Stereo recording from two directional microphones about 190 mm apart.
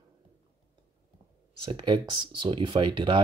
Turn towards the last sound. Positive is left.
turn(degrees=-25)  # may be behind; listen again after turning